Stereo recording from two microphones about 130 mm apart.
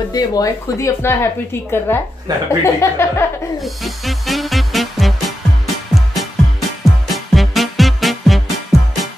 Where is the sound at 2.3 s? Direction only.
30° right (ahead or behind).